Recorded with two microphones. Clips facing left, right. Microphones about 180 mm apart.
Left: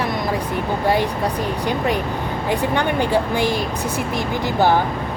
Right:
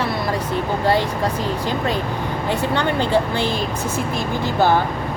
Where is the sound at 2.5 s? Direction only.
15° left (ahead or behind).